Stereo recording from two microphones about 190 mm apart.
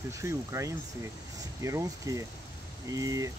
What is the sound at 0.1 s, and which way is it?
Speech, 15° right (ahead or behind).